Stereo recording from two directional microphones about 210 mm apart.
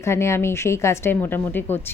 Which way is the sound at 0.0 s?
15° left (ahead or behind).